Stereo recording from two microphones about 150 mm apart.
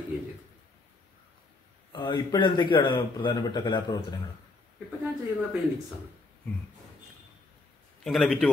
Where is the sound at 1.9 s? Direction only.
30° left (ahead or behind).